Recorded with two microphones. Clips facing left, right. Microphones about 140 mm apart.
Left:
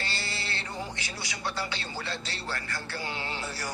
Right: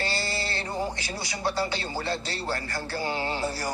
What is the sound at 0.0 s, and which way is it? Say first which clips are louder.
A man's voice: right 6 dB; 40° right (ahead or behind).